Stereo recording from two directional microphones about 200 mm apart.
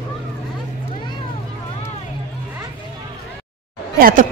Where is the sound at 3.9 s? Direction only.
45° right (ahead or behind).